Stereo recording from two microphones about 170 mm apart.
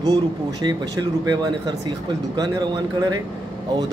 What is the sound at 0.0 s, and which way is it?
A man's voice, 25° right (ahead or behind).